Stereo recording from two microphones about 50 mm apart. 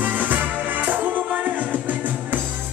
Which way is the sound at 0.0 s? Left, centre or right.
Right.